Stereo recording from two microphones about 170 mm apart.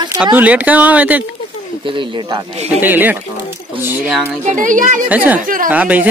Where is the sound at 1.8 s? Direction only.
30° right (ahead or behind).